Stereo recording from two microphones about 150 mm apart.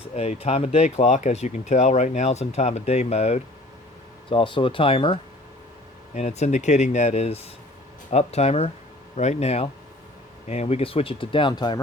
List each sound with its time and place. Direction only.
0.1 s speech: 45° left (ahead or behind)
6.1 s speech: 50° left (ahead or behind); by 11.8 s 30° left (ahead or behind)